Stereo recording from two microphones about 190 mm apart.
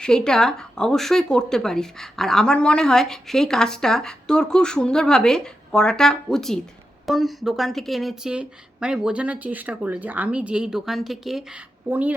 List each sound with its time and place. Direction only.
0.0 s speech: 5° left (ahead or behind)